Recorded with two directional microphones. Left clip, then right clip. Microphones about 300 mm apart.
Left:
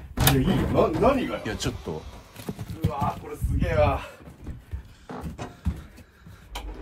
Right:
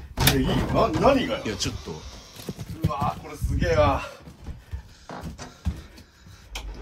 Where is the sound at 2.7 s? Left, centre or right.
Centre.